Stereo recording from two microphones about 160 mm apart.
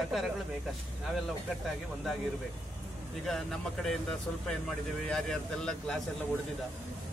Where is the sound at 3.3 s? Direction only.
Centre (ahead or behind).